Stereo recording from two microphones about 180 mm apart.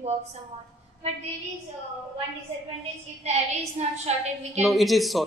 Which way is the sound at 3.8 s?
35° right (ahead or behind).